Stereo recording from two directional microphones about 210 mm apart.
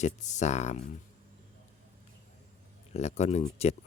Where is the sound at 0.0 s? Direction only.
35° left (ahead or behind).